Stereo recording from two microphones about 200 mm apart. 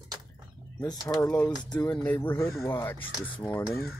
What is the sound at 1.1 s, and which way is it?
Speech, 15° left (ahead or behind).